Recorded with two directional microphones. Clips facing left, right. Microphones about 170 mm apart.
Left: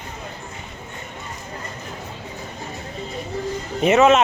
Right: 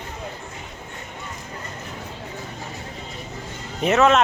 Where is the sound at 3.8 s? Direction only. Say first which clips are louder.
Left 3 dB; 5° left (ahead or behind).